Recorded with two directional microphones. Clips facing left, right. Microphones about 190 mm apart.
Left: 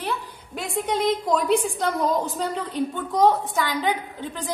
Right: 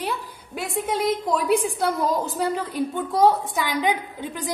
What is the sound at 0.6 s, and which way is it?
A woman's voice, 5° right (ahead or behind).